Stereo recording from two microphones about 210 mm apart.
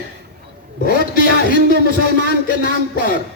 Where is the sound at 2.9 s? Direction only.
40° left (ahead or behind).